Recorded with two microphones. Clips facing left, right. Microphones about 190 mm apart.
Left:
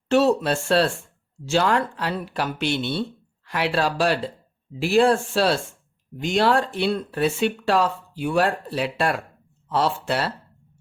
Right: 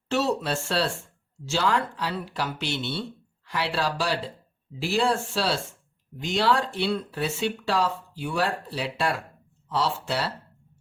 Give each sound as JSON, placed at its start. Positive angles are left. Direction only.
{"t": 0.1, "sound": "speech", "side_deg": 55}